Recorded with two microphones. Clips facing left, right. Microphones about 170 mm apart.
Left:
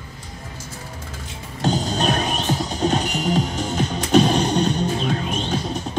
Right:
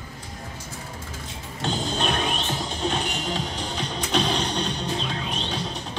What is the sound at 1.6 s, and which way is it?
Music, 40° left (ahead or behind).